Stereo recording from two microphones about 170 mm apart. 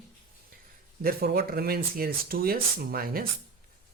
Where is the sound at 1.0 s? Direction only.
65° right (ahead or behind).